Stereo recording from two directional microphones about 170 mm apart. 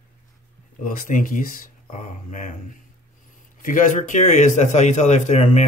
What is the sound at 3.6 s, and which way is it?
A man's voice, 50° left (ahead or behind).